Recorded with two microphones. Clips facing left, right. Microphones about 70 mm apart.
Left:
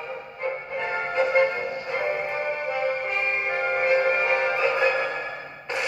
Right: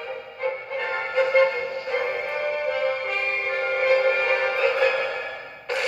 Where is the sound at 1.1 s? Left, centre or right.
Left.